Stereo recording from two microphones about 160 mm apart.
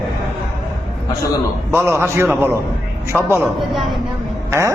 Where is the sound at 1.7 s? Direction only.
15° right (ahead or behind).